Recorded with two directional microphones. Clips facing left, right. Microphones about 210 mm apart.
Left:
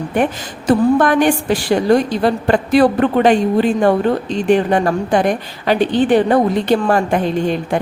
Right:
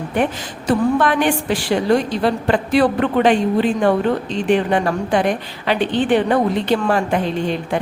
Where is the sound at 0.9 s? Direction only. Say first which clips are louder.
Left 4 dB; 45° left (ahead or behind).